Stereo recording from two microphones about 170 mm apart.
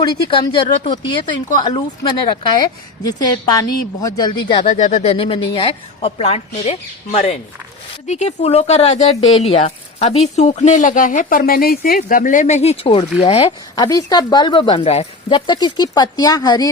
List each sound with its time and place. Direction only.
0.0 s speech: 30° left (ahead or behind)
4.6 s speech: 45° left (ahead or behind); by 16.6 s 20° left (ahead or behind)